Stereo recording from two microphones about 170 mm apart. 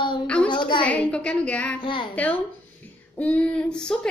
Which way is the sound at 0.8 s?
5° left (ahead or behind).